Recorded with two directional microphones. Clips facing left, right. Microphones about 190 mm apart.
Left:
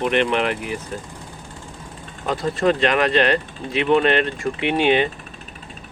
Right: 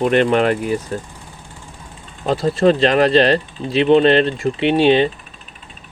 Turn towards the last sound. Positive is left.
turn(degrees=-30)  # may be behind; listen again after turning